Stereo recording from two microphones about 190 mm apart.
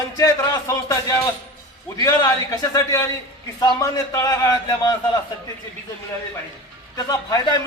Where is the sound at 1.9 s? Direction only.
20° left (ahead or behind).